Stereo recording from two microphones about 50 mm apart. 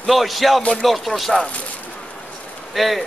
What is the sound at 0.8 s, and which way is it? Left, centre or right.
Speech, centre.